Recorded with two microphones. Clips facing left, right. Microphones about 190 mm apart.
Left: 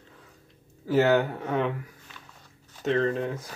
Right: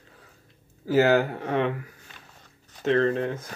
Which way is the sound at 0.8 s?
Centre (ahead or behind).